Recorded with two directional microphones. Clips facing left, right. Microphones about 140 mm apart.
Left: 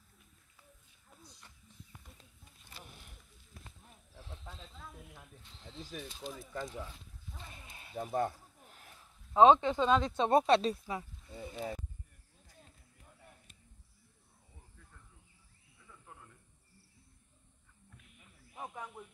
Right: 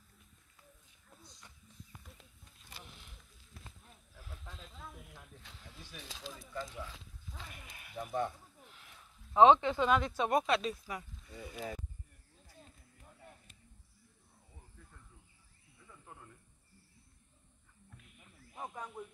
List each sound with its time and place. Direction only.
4.1 s snake: 30° left (ahead or behind)
5.0 s a sound: 20° left (ahead or behind)
5.7 s speech: 25° left (ahead or behind)
6.0 s speech: 90° right
6.5 s speech: 40° left (ahead or behind)
7.5 s a sound: 25° left (ahead or behind)
8.2 s snake: 45° left (ahead or behind)
9.3 s speech: 20° left (ahead or behind)
15.9 s frog: 5° right (ahead or behind)
18.6 s snake: 5° left (ahead or behind)